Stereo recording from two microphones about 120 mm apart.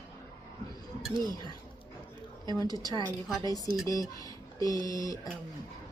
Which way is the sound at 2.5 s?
30° left (ahead or behind).